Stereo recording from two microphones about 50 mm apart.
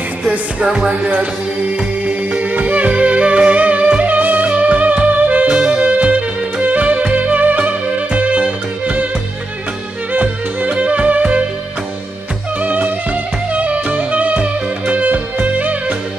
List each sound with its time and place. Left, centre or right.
0.7 s music: centre
2.0 s music: right
5.5 s music: centre
5.8 s music: right
10.1 s music: right
12.6 s music: right